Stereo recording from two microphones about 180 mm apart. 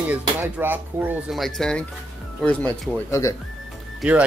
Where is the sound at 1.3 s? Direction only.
Centre (ahead or behind).